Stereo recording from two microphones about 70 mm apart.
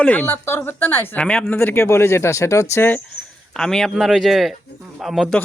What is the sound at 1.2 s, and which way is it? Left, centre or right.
Speech, centre.